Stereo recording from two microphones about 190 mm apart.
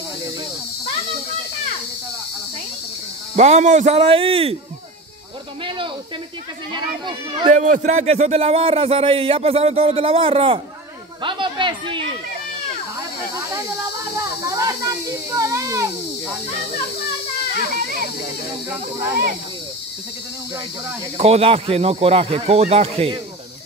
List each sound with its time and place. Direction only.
3.3 s speech: 35° right (ahead or behind)
6.7 s a child's voice: 25° right (ahead or behind)
7.5 s speech: 40° right (ahead or behind)
11.2 s a sound: 25° right (ahead or behind)
14.1 s a child's voice: 15° right (ahead or behind)
21.2 s speech: 30° right (ahead or behind)